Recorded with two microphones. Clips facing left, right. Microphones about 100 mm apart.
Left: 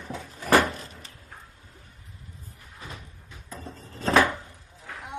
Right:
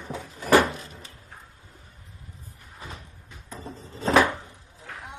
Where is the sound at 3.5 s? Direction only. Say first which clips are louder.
Right 2 dB; 15° right (ahead or behind).